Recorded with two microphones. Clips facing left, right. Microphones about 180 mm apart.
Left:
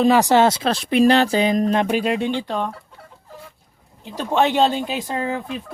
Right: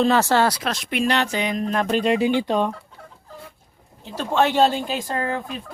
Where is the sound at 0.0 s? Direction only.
15° left (ahead or behind); by 1.7 s 35° left (ahead or behind).